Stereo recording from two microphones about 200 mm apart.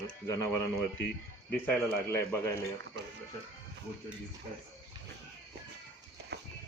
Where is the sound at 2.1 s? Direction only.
10° left (ahead or behind).